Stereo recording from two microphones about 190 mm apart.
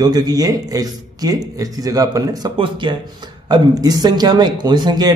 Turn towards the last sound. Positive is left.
turn(degrees=-20)  # may be behind; listen again after turning